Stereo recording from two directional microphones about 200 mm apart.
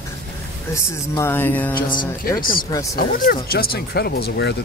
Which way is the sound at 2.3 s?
45° left (ahead or behind).